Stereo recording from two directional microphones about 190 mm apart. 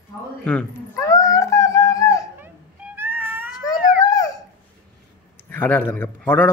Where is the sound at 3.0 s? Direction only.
10° right (ahead or behind).